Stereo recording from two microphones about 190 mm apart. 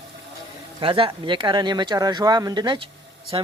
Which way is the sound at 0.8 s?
25° right (ahead or behind).